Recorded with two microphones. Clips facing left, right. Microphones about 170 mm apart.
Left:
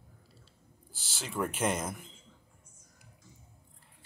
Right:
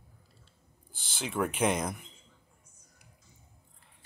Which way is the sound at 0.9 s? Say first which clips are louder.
Right 5 dB; 5° left (ahead or behind).